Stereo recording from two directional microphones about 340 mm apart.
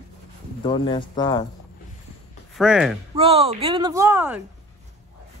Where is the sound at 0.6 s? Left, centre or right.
Centre.